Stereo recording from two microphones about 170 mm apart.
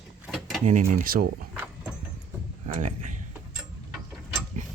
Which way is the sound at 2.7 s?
45° right (ahead or behind).